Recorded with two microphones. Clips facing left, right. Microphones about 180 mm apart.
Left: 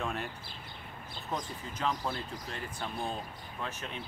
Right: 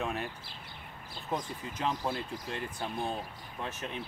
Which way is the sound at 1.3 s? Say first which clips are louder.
Right 2 dB; 20° right (ahead or behind).